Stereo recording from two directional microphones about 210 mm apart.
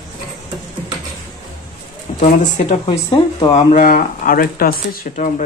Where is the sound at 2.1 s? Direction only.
35° left (ahead or behind).